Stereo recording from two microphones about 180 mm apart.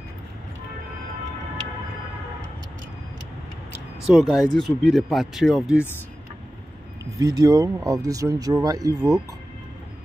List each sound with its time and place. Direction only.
4.0 s speech: centre (ahead or behind)
7.2 s speech: 20° right (ahead or behind)